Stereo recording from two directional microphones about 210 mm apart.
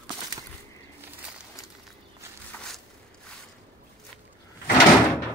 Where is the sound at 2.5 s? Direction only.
5° left (ahead or behind).